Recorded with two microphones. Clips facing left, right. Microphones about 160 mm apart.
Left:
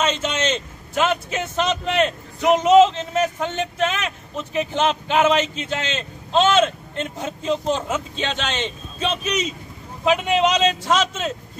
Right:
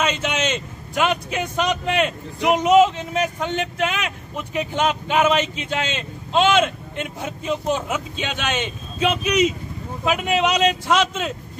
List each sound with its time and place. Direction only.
0.0 s a man's voice: 10° right (ahead or behind)